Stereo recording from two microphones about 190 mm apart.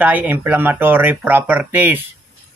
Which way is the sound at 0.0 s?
10° right (ahead or behind).